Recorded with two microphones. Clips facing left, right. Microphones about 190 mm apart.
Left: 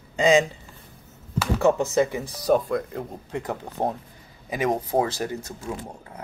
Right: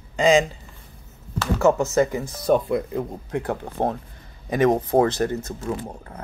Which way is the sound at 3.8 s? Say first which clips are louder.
Right 2 dB; 20° right (ahead or behind).